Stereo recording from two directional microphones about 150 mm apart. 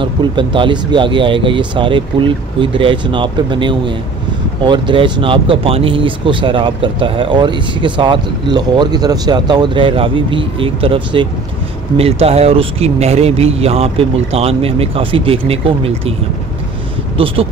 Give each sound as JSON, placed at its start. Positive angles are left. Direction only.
{"t": 0.0, "sound": "speech", "side_deg": -30}
{"t": 17.2, "sound": "speech", "side_deg": -40}